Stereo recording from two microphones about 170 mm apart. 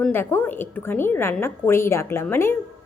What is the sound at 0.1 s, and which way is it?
A woman's voice, 10° left (ahead or behind).